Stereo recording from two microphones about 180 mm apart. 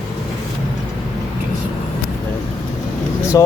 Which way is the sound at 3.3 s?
20° left (ahead or behind).